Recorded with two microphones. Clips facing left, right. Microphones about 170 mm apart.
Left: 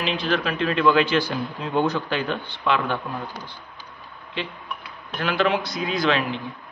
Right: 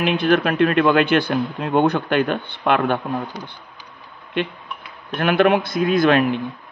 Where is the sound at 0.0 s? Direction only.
55° right (ahead or behind).